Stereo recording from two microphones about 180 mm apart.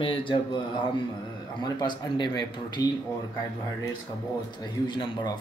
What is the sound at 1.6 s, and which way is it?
Speech, 25° left (ahead or behind).